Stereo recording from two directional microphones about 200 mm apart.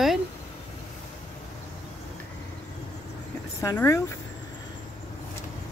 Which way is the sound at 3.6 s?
15° left (ahead or behind).